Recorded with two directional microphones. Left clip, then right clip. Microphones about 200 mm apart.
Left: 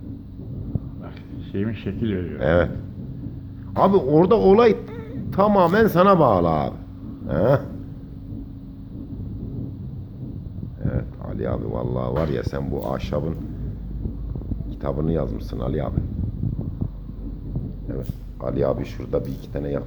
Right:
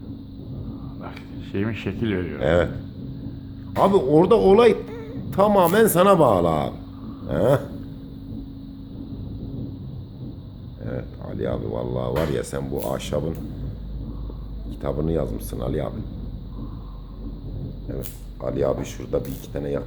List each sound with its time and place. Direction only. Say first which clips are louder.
1.5 s a man's voice: right 1 dB; 20° right (ahead or behind)
3.8 s a man's voice: even; 20° right (ahead or behind)
10.8 s speech: left 1 dB; 20° right (ahead or behind)
14.8 s speech: even; 20° right (ahead or behind)
18.4 s speech: even; 15° right (ahead or behind)